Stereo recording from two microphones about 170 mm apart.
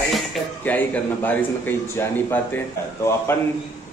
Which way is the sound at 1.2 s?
10° left (ahead or behind).